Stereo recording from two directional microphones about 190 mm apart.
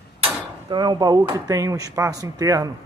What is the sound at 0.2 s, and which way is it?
Speech, 25° right (ahead or behind).